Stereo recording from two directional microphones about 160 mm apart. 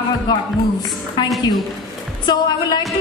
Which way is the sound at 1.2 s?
30° left (ahead or behind).